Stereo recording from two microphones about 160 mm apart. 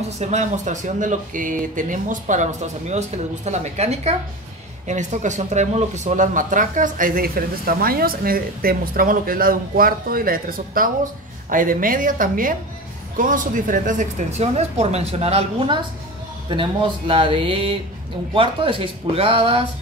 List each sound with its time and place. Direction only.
0.2 s speech: 45° right (ahead or behind)